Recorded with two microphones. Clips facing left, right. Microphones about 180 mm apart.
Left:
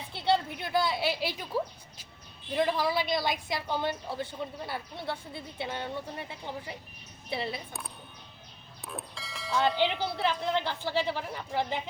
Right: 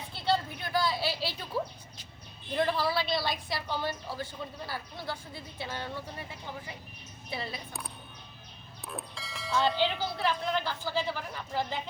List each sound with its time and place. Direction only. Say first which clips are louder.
0.3 s a sound: left 2 dB; 25° left (ahead or behind)
1.5 s a woman's voice: left 2 dB; 10° left (ahead or behind)
8.9 s bell: even; centre (ahead or behind)
9.6 s a woman's voice: left 1 dB; 15° left (ahead or behind)